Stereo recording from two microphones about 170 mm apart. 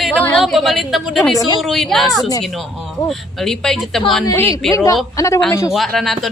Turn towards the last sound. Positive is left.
turn(degrees=0)  # may be behind; listen again after turning